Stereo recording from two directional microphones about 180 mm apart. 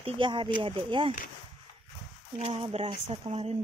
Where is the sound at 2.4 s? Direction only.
30° right (ahead or behind).